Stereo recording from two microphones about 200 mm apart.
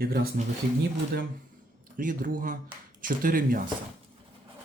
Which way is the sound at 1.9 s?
45° right (ahead or behind).